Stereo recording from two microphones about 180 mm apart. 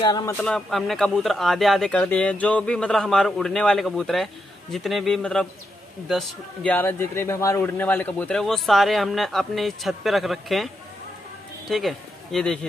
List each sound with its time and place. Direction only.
0.0 s speech: 20° left (ahead or behind)
0.4 s a man's voice: centre (ahead or behind)